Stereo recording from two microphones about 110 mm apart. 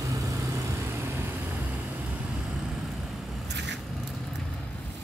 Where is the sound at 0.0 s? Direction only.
30° right (ahead or behind).